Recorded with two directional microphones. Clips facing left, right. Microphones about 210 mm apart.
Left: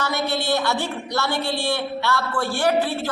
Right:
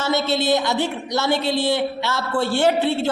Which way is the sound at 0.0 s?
25° right (ahead or behind).